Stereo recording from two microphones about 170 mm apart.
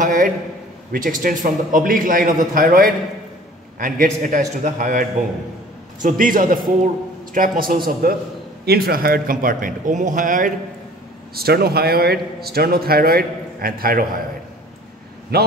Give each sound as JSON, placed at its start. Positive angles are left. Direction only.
{"t": 0.0, "sound": "a man's voice", "side_deg": -55}
{"t": 6.0, "sound": "a man's voice", "side_deg": -55}
{"t": 11.3, "sound": "a man's voice", "side_deg": -65}
{"t": 15.3, "sound": "a man's voice", "side_deg": -70}